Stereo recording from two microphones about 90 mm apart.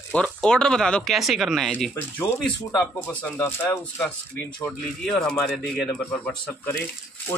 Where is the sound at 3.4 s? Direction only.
20° left (ahead or behind).